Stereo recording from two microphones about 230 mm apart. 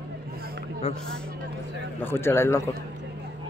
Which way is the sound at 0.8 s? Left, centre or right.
Left.